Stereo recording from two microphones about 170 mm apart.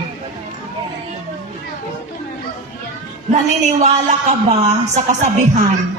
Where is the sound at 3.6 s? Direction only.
45° right (ahead or behind).